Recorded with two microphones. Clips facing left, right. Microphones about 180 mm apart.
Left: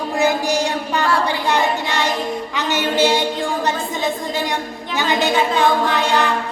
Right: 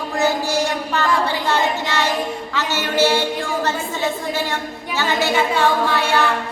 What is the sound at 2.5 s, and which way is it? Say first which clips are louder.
A woman's voice: left 2 dB; 15° left (ahead or behind).